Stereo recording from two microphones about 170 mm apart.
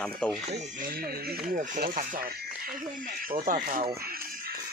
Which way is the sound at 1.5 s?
50° right (ahead or behind).